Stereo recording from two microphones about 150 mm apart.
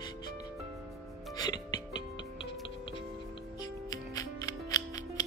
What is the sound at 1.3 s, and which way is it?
Music, 25° left (ahead or behind).